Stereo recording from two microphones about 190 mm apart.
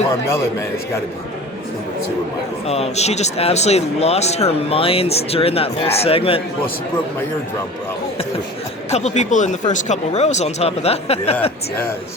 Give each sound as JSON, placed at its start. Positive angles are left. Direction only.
{"t": 2.6, "sound": "speech", "side_deg": 35}
{"t": 8.9, "sound": "speech", "side_deg": 35}